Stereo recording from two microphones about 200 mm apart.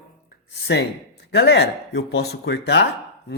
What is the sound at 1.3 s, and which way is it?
A man's voice, 55° left (ahead or behind).